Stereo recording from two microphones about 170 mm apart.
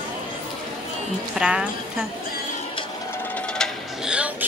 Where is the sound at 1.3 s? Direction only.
5° right (ahead or behind).